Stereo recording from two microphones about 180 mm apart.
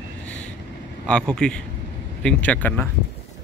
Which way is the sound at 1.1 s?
5° left (ahead or behind).